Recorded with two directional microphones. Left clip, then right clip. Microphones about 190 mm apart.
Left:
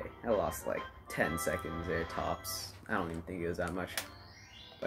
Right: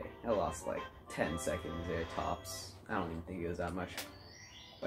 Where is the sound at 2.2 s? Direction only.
45° left (ahead or behind).